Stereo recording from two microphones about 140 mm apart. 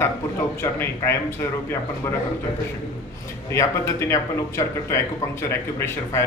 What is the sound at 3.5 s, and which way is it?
Speech, 20° left (ahead or behind).